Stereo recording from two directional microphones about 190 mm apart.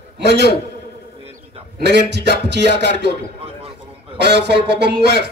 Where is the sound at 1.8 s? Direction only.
60° right (ahead or behind).